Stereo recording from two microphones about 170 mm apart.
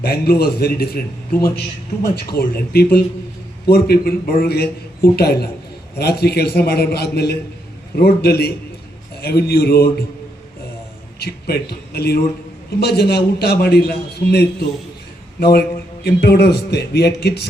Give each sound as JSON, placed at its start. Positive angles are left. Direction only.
{"t": 0.0, "sound": "a man's voice", "side_deg": 65}
{"t": 2.1, "sound": "a man's voice", "side_deg": 65}
{"t": 11.2, "sound": "a man's voice", "side_deg": 70}